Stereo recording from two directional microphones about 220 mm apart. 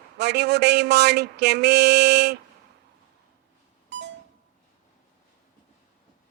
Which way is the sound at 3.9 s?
55° right (ahead or behind).